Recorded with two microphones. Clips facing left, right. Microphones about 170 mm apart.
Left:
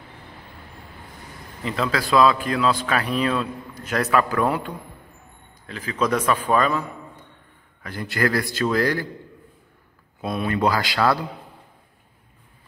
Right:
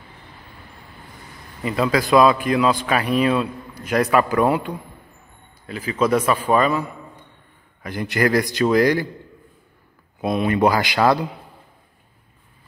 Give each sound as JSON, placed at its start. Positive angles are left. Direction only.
{"t": 1.6, "sound": "a man's voice", "side_deg": -10}
{"t": 10.2, "sound": "speech", "side_deg": -15}